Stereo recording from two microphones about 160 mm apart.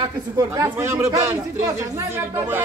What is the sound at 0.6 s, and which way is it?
A man's voice, 15° right (ahead or behind).